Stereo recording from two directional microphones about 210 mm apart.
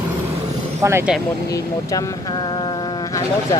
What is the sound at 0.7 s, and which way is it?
Speech, 10° right (ahead or behind).